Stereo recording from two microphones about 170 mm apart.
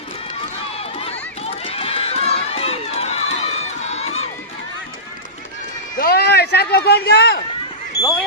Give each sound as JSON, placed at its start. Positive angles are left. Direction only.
{"t": 0.7, "sound": "run", "side_deg": 35}
{"t": 5.9, "sound": "speech", "side_deg": 65}
{"t": 7.9, "sound": "a sound", "side_deg": 20}